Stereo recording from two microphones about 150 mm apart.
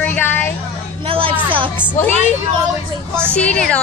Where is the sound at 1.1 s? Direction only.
35° right (ahead or behind).